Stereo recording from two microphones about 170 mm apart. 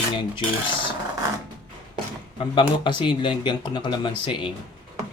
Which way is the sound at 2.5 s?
30° left (ahead or behind).